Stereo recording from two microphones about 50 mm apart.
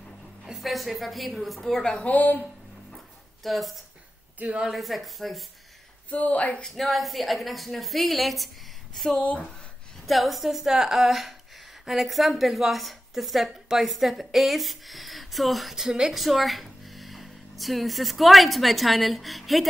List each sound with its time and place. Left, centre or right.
0.5 s a woman's voice: centre
2.0 s speech: left
3.4 s a woman's voice: centre
4.4 s a woman's voice: right
4.6 s a woman's voice: centre
6.0 s speech: left
6.6 s a woman's voice: centre
9.1 s speech: left
10.0 s a woman's voice: centre
15.7 s speech: centre
16.1 s speech: centre